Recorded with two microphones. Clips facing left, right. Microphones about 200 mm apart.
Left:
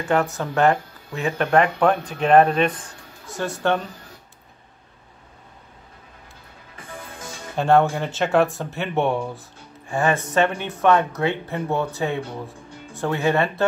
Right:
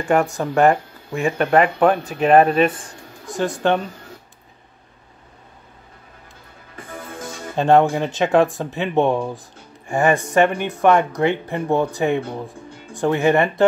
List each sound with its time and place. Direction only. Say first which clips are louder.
0.1 s speech: right 3 dB; 10° right (ahead or behind)
7.5 s speech: right 3 dB; 15° right (ahead or behind)